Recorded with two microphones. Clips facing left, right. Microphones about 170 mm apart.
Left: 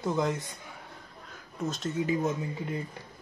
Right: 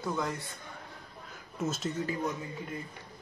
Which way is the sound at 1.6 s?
Centre (ahead or behind).